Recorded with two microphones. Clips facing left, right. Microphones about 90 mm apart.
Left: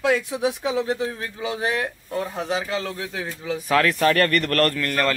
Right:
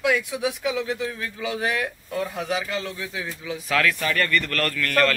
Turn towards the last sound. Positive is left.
turn(degrees=20)  # may be behind; listen again after turning